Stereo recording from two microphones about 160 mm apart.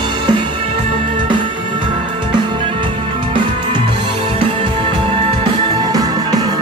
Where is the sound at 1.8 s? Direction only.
30° right (ahead or behind).